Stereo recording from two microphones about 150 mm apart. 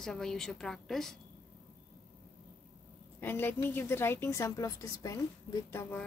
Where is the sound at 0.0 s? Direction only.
5° left (ahead or behind).